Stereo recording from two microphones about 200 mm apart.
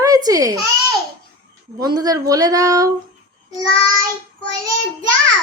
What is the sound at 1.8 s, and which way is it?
A woman's voice, 20° right (ahead or behind).